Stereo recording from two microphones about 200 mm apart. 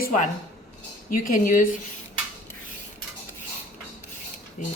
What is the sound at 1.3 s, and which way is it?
Speech, 40° left (ahead or behind).